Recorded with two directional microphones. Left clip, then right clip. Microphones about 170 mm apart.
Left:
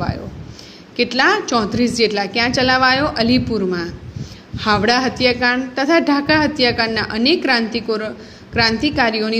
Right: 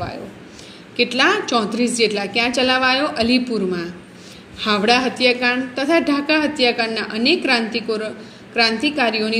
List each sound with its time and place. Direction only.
1.1 s a woman's voice: 15° left (ahead or behind)